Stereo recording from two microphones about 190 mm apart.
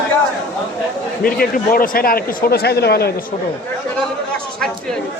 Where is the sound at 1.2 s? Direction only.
50° left (ahead or behind).